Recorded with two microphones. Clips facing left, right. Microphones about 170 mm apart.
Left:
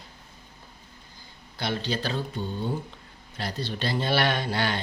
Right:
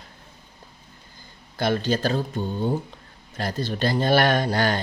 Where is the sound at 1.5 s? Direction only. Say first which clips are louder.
Right 7 dB; 45° right (ahead or behind).